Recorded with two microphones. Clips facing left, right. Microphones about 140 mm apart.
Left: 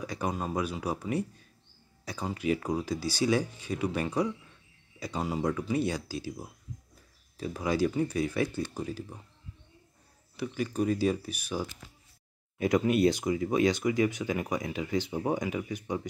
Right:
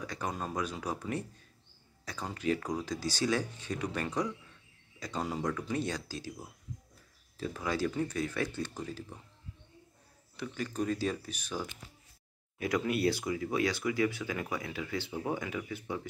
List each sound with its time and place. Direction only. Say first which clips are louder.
0.0 s speech: left 4 dB; 10° left (ahead or behind)
10.3 s speech: left 5 dB; 10° left (ahead or behind)
12.5 s speech: left 6 dB; 20° left (ahead or behind)